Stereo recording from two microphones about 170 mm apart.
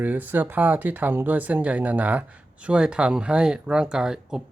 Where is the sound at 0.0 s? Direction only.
10° right (ahead or behind).